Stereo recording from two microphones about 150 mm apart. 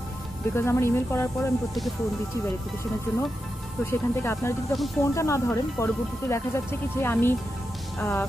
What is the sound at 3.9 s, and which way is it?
Speech, 15° left (ahead or behind).